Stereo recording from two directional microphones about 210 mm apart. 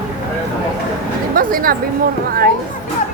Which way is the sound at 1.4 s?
40° right (ahead or behind).